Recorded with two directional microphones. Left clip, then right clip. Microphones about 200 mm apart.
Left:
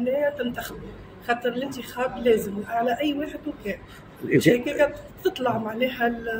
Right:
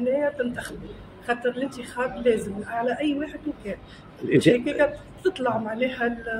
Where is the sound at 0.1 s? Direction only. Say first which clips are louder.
Left 1 dB; 5° left (ahead or behind).